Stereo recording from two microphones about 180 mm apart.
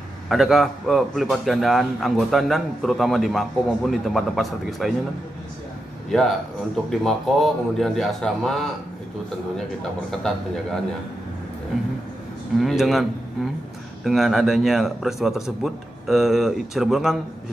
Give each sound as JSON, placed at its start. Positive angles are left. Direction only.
{"t": 0.3, "sound": "a man's voice", "side_deg": 0}
{"t": 6.0, "sound": "a man's voice", "side_deg": 0}
{"t": 10.2, "sound": "a man's voice", "side_deg": 0}
{"t": 12.5, "sound": "a man's voice", "side_deg": 0}
{"t": 14.0, "sound": "a man's voice", "side_deg": 0}